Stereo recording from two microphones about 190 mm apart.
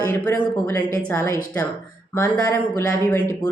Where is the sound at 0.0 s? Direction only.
10° left (ahead or behind).